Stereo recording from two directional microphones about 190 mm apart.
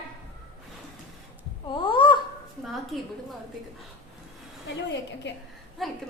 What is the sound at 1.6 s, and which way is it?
Babbling, 25° left (ahead or behind).